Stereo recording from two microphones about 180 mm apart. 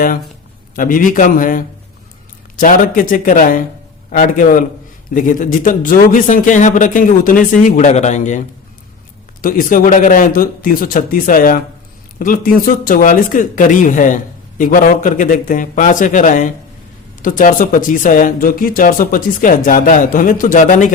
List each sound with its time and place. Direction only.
0.8 s speech: 50° left (ahead or behind)